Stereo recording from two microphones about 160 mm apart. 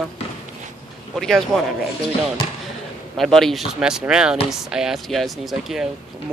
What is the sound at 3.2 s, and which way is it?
Speech, centre (ahead or behind).